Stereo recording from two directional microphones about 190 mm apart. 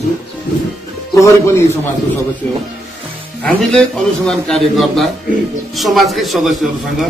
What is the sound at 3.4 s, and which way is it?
Speech, 5° left (ahead or behind).